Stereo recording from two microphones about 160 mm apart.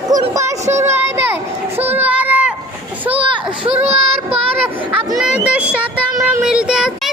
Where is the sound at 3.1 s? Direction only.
35° right (ahead or behind).